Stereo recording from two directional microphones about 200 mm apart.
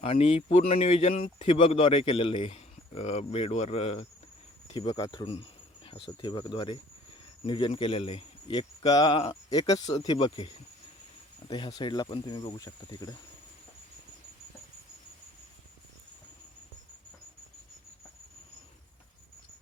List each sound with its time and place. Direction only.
0.0 s a man's voice: 30° left (ahead or behind)
4.7 s cricket: 20° left (ahead or behind)
7.4 s a man's voice: 25° left (ahead or behind)